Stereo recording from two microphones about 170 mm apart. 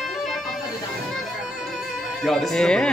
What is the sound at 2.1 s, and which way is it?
Music, centre (ahead or behind).